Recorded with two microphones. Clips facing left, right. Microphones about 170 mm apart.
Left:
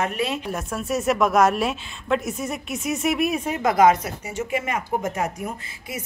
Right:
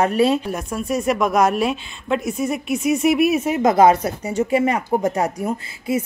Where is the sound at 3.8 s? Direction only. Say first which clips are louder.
Right 3 dB; 35° right (ahead or behind).